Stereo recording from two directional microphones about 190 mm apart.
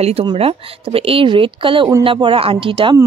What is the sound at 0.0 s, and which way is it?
A woman's voice, 30° right (ahead or behind).